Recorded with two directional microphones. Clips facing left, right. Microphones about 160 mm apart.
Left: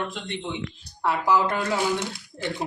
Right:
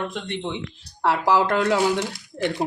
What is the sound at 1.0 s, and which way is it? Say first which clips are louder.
Speech: right 2 dB; 85° right.